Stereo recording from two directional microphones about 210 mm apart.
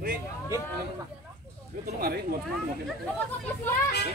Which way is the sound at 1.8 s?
45° right (ahead or behind).